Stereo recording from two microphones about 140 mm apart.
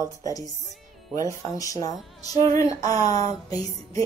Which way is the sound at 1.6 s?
25° left (ahead or behind).